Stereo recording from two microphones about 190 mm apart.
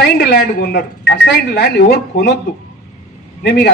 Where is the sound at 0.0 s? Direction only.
55° left (ahead or behind).